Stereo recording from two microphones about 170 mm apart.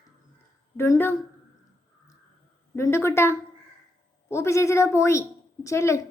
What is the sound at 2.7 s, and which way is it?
A woman's voice, 15° left (ahead or behind).